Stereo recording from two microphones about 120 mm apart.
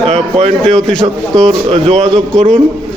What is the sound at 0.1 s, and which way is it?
Speech, 65° right (ahead or behind).